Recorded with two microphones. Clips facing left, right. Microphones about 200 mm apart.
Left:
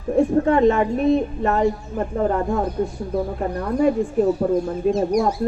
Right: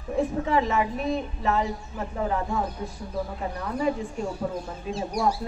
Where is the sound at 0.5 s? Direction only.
55° left (ahead or behind).